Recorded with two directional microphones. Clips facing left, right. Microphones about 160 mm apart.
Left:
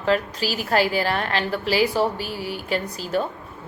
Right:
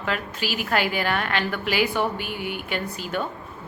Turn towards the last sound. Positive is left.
turn(degrees=35)  # may be behind; listen again after turning